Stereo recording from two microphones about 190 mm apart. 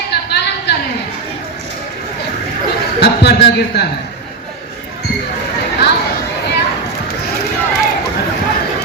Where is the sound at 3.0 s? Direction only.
60° left (ahead or behind).